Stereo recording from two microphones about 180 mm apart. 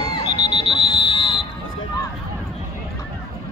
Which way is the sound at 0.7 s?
25° left (ahead or behind).